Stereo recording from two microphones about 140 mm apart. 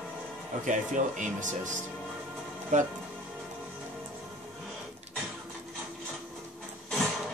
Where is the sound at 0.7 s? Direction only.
60° right (ahead or behind).